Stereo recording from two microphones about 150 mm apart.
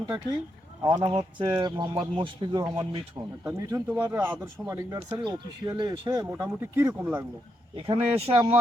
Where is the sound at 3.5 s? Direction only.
15° right (ahead or behind).